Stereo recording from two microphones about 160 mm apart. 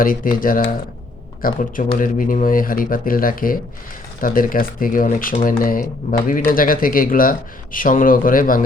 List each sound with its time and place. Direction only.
0.0 s speech: 60° left (ahead or behind)